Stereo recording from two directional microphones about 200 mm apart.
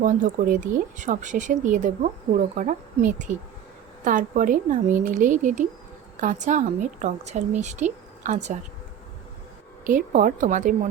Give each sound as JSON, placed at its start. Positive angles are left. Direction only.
{"t": 0.0, "sound": "a woman's voice", "side_deg": -40}
{"t": 9.8, "sound": "a woman's voice", "side_deg": -40}